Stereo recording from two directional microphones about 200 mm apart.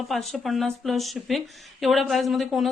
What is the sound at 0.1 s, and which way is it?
Speech, centre (ahead or behind).